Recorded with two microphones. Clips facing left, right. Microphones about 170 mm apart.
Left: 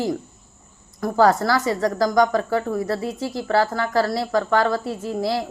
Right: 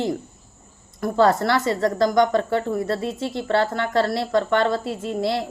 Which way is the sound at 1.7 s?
25° right (ahead or behind).